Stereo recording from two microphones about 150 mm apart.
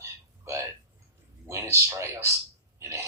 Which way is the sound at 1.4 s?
20° right (ahead or behind).